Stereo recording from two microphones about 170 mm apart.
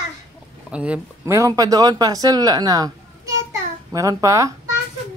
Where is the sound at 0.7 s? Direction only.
5° right (ahead or behind); by 2.9 s 20° right (ahead or behind).